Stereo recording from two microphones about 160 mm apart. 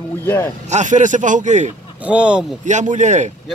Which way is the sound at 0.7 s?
50° right (ahead or behind).